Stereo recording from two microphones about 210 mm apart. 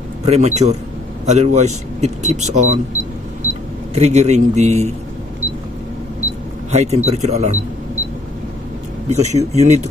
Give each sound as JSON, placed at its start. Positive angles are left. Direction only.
{"t": 0.2, "sound": "speech", "side_deg": -30}
{"t": 3.9, "sound": "speech", "side_deg": -30}
{"t": 6.7, "sound": "speech", "side_deg": -30}
{"t": 9.1, "sound": "speech", "side_deg": -35}